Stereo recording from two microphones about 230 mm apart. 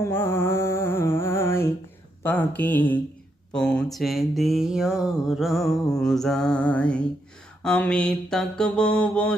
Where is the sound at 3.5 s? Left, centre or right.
Centre.